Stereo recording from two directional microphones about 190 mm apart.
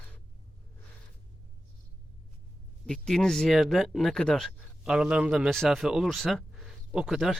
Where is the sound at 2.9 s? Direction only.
5° left (ahead or behind).